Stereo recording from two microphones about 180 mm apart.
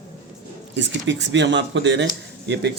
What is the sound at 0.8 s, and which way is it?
Speech, 80° right.